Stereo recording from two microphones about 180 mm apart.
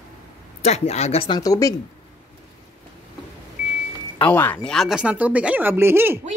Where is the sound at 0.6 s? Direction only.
35° left (ahead or behind); by 1.7 s 20° left (ahead or behind).